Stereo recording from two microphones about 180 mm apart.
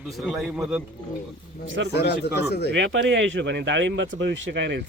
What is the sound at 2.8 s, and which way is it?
Speech, 90° right.